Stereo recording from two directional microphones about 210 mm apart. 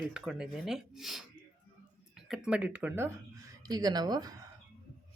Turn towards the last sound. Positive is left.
turn(degrees=-20)  # may be behind; listen again after turning